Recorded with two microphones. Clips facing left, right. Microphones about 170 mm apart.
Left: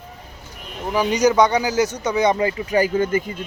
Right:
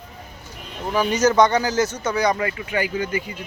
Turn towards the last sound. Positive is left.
turn(degrees=45)  # may be behind; listen again after turning